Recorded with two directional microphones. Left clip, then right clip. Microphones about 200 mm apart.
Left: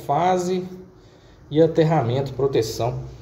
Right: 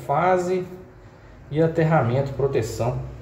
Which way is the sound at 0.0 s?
45° left (ahead or behind).